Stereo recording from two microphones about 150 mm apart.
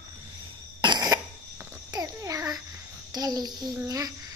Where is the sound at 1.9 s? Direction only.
25° right (ahead or behind).